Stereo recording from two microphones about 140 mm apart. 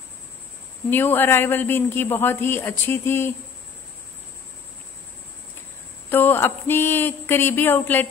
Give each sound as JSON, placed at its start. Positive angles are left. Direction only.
{"t": 0.8, "sound": "a man's voice", "side_deg": 15}
{"t": 6.0, "sound": "a man's voice", "side_deg": 15}